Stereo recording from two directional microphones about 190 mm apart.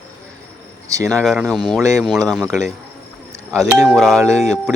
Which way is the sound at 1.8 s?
15° right (ahead or behind).